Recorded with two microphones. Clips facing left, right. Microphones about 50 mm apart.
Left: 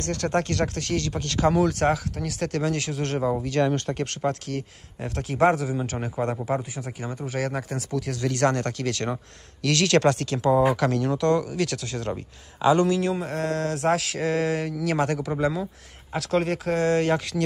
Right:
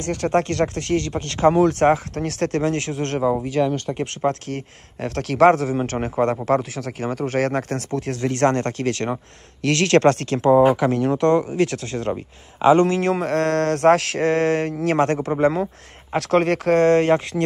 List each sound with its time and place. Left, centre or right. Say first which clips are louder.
0.0 s speech: right 5 dB; right
2.1 s mantra: right 6 dB; right
2.5 s speech: right 4 dB; right
3.6 s speech: right 2 dB; centre
4.3 s speech: right 3 dB; right
5.0 s mantra: right 6 dB; right
6.4 s speech: right 7 dB; right
7.9 s speech: right 3 dB; right
10.8 s speech: right 4 dB; right
13.1 s mantra: right 7 dB; right
16.2 s mantra: right 6 dB; right